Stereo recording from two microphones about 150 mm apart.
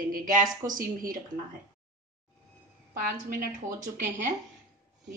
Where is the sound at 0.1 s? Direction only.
65° right (ahead or behind).